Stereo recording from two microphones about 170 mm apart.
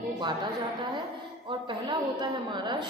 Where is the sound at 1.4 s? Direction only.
25° right (ahead or behind).